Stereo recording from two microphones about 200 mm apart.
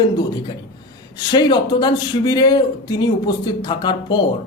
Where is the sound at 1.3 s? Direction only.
20° left (ahead or behind).